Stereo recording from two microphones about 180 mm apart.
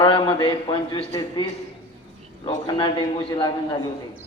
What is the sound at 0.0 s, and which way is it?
A man's voice, 25° left (ahead or behind).